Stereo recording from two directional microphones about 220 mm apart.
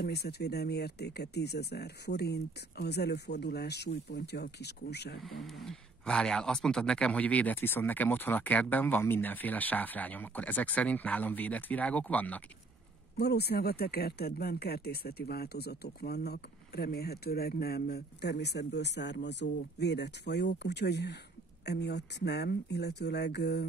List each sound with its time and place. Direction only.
0.0 s speech: 45° left (ahead or behind)
5.2 s speech: centre (ahead or behind)
13.2 s speech: 45° left (ahead or behind)